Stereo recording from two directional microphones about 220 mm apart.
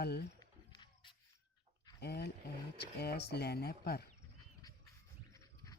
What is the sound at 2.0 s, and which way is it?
Speech, 45° left (ahead or behind).